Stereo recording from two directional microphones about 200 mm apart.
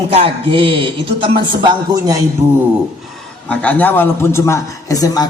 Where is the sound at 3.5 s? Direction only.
5° left (ahead or behind).